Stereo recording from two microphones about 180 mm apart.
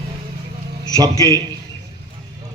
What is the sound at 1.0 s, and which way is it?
Speech, 20° right (ahead or behind).